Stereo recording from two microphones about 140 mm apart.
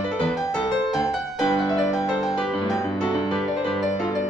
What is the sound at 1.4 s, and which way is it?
Music, 30° left (ahead or behind).